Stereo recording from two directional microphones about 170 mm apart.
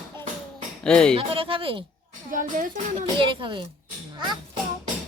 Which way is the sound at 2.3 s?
50° right (ahead or behind).